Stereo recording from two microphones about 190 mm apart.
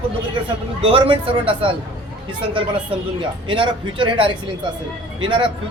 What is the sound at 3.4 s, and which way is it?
A man's voice, 25° right (ahead or behind).